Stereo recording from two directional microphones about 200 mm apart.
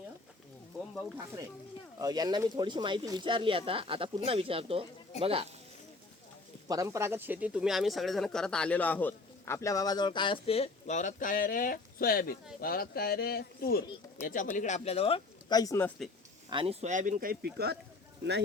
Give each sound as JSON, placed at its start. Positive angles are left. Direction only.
{"t": 2.0, "sound": "speech", "side_deg": -20}
{"t": 6.7, "sound": "speech", "side_deg": -15}
{"t": 16.5, "sound": "speech", "side_deg": -25}